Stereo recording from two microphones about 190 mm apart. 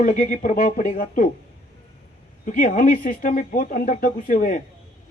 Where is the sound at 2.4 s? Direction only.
45° left (ahead or behind).